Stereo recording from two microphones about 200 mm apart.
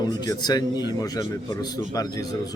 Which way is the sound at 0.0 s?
20° left (ahead or behind).